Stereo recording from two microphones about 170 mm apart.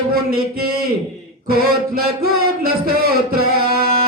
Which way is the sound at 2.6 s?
60° right (ahead or behind).